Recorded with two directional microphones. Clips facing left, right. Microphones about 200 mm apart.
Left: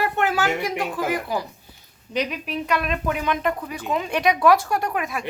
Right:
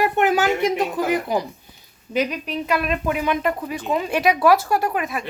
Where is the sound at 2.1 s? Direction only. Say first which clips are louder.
Right 3 dB; centre (ahead or behind).